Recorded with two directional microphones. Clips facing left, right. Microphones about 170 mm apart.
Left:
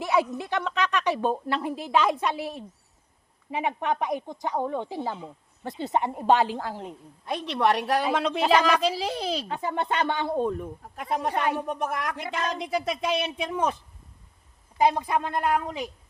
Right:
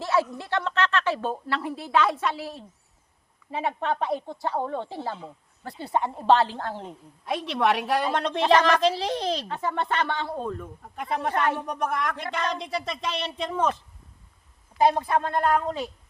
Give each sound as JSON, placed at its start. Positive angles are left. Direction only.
{"t": 0.0, "sound": "a woman's voice", "side_deg": 15}
{"t": 10.9, "sound": "speech", "side_deg": 0}
{"t": 11.3, "sound": "a woman's voice", "side_deg": 10}
{"t": 15.0, "sound": "a woman's voice", "side_deg": 15}